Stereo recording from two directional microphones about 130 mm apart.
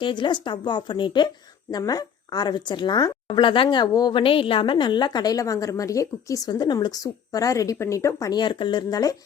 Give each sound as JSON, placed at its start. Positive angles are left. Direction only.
{"t": 0.0, "sound": "a woman's voice", "side_deg": 40}